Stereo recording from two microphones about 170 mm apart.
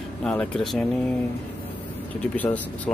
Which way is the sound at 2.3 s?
10° left (ahead or behind).